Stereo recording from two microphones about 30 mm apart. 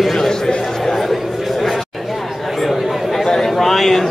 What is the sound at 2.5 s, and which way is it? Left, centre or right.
Chatter, centre.